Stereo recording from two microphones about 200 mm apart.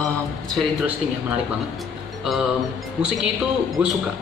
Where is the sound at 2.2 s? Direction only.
Centre (ahead or behind).